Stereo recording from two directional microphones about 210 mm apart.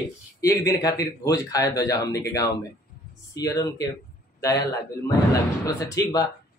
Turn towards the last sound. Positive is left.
turn(degrees=15)  # may be behind; listen again after turning